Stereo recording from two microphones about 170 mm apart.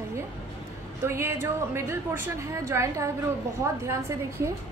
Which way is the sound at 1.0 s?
15° right (ahead or behind).